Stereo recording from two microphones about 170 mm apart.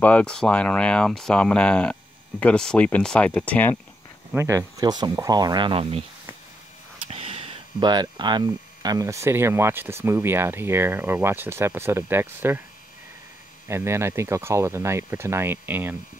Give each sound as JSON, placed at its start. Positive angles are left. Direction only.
{"t": 0.0, "sound": "speech", "side_deg": 5}
{"t": 4.4, "sound": "speech", "side_deg": -20}
{"t": 7.1, "sound": "speech", "side_deg": -35}
{"t": 13.7, "sound": "speech", "side_deg": -15}